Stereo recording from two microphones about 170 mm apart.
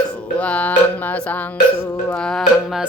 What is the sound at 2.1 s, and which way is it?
Speech, 5° left (ahead or behind).